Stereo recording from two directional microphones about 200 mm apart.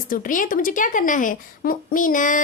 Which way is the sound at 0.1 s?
45° left (ahead or behind).